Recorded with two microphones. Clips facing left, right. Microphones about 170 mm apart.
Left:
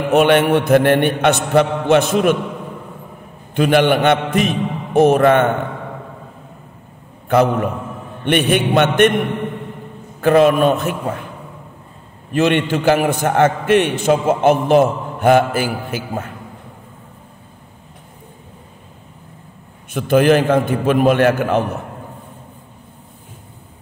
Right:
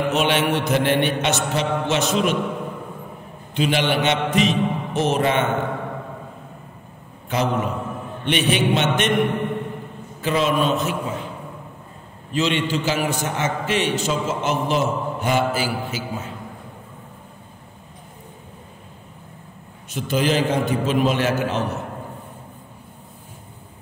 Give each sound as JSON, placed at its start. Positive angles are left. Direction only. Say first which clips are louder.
{"t": 0.1, "sound": "a man's voice", "louder": "left 12 dB", "side_deg": 55}
{"t": 3.5, "sound": "a man's voice", "louder": "left 7 dB", "side_deg": 50}
{"t": 7.2, "sound": "a man's voice", "louder": "left 7 dB", "side_deg": 55}
{"t": 10.2, "sound": "a man's voice", "louder": "left 8 dB", "side_deg": 55}
{"t": 12.3, "sound": "a man's voice", "louder": "left 6 dB", "side_deg": 55}
{"t": 19.9, "sound": "a man's voice", "louder": "left 8 dB", "side_deg": 55}